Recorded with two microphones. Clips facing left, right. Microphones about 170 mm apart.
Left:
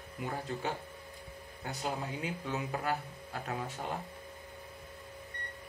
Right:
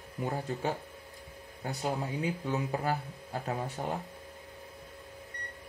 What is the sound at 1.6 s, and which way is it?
Speech, 35° right (ahead or behind).